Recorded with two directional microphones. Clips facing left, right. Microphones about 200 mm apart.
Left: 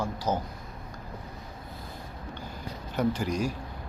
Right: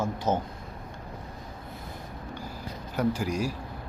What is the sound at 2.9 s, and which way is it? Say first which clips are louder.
Speech: even; 10° right (ahead or behind).